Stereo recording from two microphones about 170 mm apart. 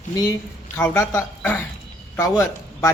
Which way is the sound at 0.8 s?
15° left (ahead or behind).